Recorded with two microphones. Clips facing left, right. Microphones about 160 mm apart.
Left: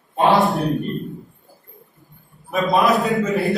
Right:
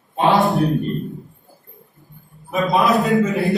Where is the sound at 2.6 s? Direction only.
Centre (ahead or behind).